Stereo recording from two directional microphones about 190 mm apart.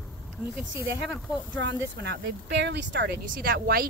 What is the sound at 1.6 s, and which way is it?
Speech, 70° right (ahead or behind).